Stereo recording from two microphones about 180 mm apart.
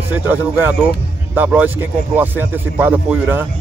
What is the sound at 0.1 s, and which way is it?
Speech, 10° right (ahead or behind).